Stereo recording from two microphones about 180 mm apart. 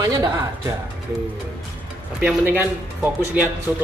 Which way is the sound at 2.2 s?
10° right (ahead or behind).